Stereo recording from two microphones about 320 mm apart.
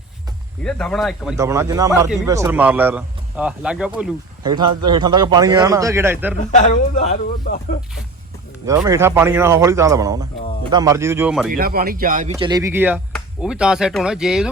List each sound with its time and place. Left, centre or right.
0.6 s speech: centre
6.5 s speech: left
8.6 s speech: centre
11.5 s speech: right
12.3 s speech: centre